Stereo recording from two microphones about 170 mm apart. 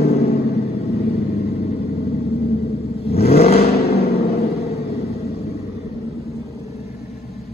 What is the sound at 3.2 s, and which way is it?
Accelerating, 35° left (ahead or behind).